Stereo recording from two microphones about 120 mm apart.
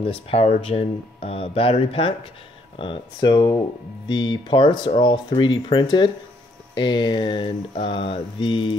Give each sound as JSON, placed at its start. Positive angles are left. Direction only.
{"t": 0.0, "sound": "speech", "side_deg": 50}
{"t": 2.8, "sound": "speech", "side_deg": 40}